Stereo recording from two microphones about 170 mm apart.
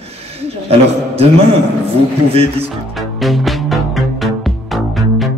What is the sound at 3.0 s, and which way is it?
Music, centre (ahead or behind).